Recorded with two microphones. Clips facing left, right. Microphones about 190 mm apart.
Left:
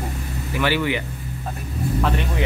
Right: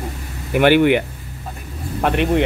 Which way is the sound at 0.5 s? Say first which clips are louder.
Right 9 dB; 60° right (ahead or behind).